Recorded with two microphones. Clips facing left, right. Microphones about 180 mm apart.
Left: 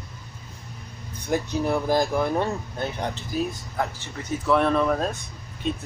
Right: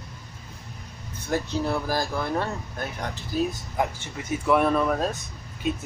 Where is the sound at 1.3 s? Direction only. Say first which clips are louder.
Left 2 dB; 15° left (ahead or behind).